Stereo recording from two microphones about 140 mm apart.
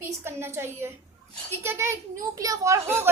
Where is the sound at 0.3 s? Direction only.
15° right (ahead or behind).